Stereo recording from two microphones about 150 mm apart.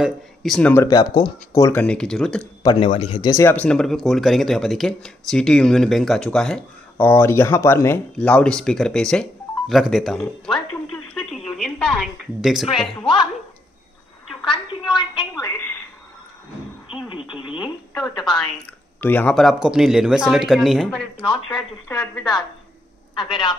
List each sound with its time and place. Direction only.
0.0 s speech: centre (ahead or behind)
0.8 s speech: 25° left (ahead or behind)
1.8 s speech: 5° left (ahead or behind)
2.6 s speech: 30° left (ahead or behind)
3.6 s speech: 5° left (ahead or behind)
7.1 s speech: 15° left (ahead or behind)
10.9 s a sound: 5° left (ahead or behind)
13.0 s speech: 35° left (ahead or behind)
14.4 s a woman's voice: 35° left (ahead or behind)
15.4 s a woman's voice: 15° left (ahead or behind)
16.9 s radio: 35° left (ahead or behind)
17.3 s speech: 30° left (ahead or behind)
18.9 s speech: 10° left (ahead or behind)
23.1 s speech: 35° left (ahead or behind)